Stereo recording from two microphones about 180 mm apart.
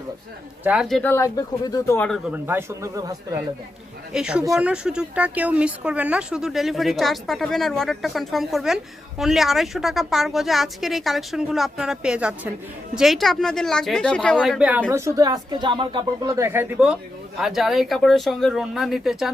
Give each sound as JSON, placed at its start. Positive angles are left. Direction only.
{"t": 0.6, "sound": "speech", "side_deg": -5}
{"t": 1.1, "sound": "speech", "side_deg": 20}
{"t": 2.0, "sound": "speech", "side_deg": 0}
{"t": 4.1, "sound": "speech", "side_deg": -5}
{"t": 14.8, "sound": "speech", "side_deg": -15}